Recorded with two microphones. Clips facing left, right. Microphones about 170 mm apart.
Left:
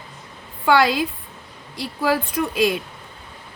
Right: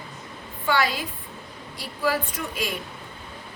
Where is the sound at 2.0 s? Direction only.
70° left (ahead or behind).